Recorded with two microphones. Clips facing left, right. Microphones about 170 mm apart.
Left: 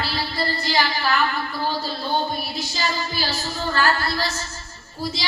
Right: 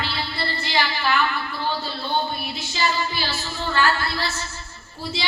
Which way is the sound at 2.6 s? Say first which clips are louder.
Right 5 dB; 40° left (ahead or behind).